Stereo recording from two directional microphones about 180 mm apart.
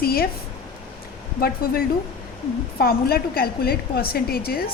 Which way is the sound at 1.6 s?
55° left (ahead or behind).